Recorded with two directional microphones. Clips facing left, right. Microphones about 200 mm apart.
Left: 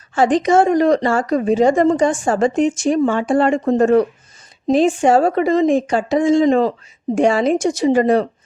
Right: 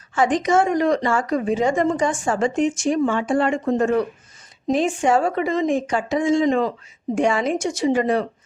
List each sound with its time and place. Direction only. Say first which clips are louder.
0.1 s a woman's voice: left 4 dB; 30° left (ahead or behind)